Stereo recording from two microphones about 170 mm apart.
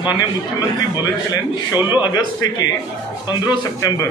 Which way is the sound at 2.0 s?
25° left (ahead or behind).